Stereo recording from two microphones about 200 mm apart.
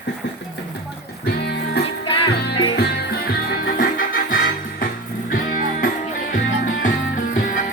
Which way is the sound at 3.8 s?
45° left (ahead or behind).